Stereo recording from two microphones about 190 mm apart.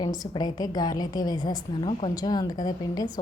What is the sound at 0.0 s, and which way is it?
A woman's voice, 20° left (ahead or behind).